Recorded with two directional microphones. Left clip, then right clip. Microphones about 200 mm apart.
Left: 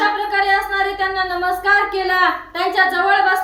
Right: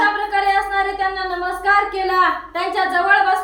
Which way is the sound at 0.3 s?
15° left (ahead or behind).